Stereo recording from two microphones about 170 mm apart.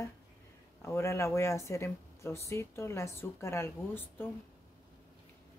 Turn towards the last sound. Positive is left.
turn(degrees=15)  # may be behind; listen again after turning